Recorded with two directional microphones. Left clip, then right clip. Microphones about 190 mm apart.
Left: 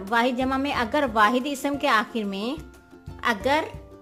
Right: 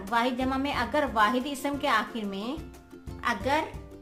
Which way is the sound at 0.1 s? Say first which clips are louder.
Left 4 dB; 35° left (ahead or behind).